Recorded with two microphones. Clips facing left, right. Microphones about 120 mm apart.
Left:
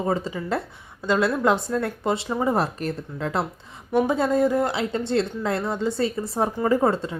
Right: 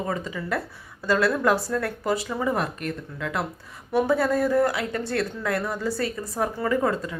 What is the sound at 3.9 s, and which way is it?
Speech, 20° left (ahead or behind).